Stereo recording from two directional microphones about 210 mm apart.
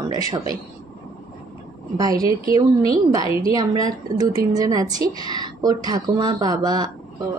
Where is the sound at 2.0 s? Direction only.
15° right (ahead or behind).